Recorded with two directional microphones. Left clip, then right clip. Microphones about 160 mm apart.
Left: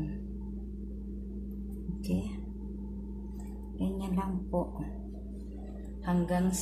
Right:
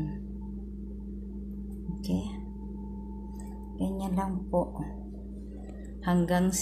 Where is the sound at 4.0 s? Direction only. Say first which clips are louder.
Right 3 dB; 15° right (ahead or behind).